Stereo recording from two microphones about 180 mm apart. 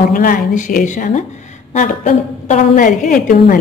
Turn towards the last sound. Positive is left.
turn(degrees=50)  # may be behind; listen again after turning